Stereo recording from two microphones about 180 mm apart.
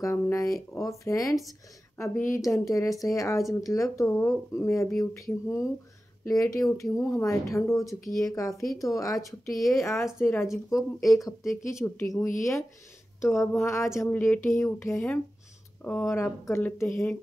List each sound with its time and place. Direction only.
0.0 s speech: 15° left (ahead or behind)